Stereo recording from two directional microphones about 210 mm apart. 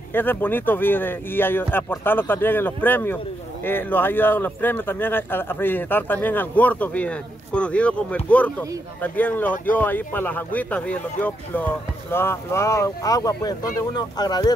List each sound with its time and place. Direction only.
0.1 s speech: 10° left (ahead or behind)